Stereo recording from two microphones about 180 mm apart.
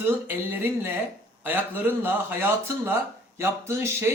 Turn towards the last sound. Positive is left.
turn(degrees=-15)  # may be behind; listen again after turning